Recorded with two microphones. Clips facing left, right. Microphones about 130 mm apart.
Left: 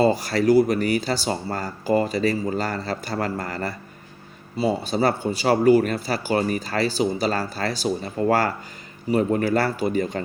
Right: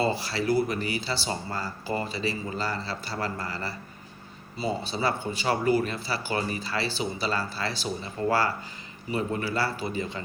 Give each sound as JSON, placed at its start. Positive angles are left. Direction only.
{"t": 0.0, "sound": "speech", "side_deg": 45}